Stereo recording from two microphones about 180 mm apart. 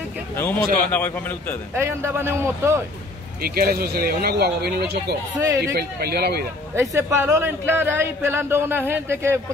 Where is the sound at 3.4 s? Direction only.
55° right (ahead or behind).